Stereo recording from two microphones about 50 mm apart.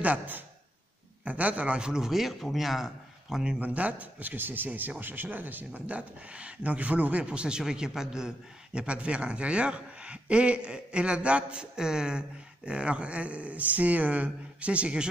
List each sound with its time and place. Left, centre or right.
0.0 s a man's voice: right; by 3.4 s centre
3.4 s speech: right
7.2 s a man's voice: centre
8.7 s a man's voice: right